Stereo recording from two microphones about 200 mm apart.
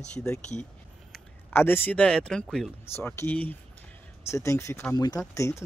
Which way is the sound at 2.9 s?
10° left (ahead or behind).